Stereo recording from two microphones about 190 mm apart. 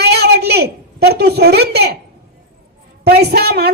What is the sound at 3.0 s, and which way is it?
Speech, 60° right (ahead or behind).